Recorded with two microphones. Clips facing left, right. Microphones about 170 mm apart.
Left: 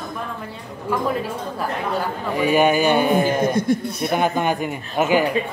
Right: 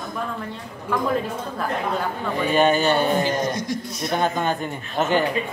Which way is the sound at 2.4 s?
10° left (ahead or behind).